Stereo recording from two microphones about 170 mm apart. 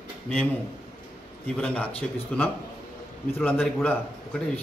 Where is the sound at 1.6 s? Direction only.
10° left (ahead or behind).